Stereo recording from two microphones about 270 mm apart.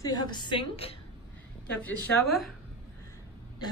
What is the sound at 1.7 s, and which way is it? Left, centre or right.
Speech, centre.